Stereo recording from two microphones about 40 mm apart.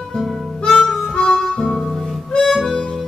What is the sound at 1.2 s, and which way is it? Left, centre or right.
Harmonica, centre.